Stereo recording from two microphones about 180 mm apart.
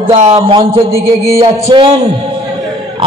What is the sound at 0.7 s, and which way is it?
Music, 15° right (ahead or behind).